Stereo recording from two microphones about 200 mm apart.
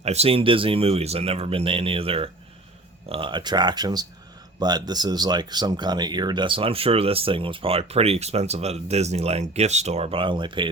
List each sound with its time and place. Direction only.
0.0 s speech: 30° right (ahead or behind)